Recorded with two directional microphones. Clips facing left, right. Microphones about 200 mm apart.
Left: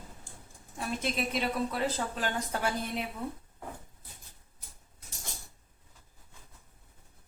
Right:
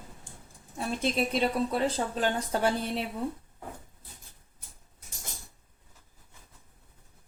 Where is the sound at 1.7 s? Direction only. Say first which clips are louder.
Right 4 dB; 30° right (ahead or behind).